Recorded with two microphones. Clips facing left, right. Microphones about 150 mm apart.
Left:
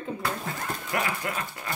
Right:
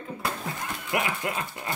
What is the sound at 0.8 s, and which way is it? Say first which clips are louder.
Speech: right 2 dB; 20° right (ahead or behind).